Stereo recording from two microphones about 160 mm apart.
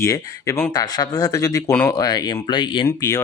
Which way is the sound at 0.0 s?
20° left (ahead or behind).